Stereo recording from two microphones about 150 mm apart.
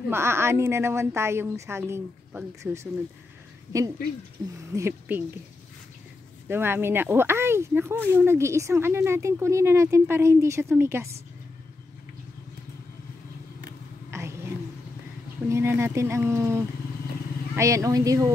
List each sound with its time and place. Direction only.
0.1 s speech: 15° right (ahead or behind)
4.7 s speech: 15° right (ahead or behind)
6.4 s speech: 15° right (ahead or behind)
14.1 s a sound: 20° right (ahead or behind)
15.4 s speech: 15° right (ahead or behind)